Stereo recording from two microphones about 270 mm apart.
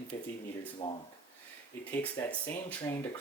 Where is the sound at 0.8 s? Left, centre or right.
Left.